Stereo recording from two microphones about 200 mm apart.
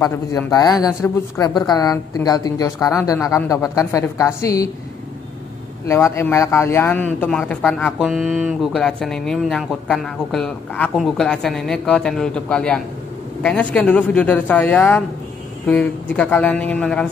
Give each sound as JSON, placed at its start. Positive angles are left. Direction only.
{"t": 0.0, "sound": "a woman's voice", "side_deg": 15}
{"t": 5.9, "sound": "a woman's voice", "side_deg": 15}